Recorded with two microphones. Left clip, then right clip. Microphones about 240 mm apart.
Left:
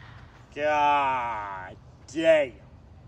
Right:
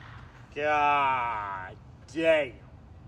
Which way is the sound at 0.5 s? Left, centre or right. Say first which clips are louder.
Left 2 dB; left.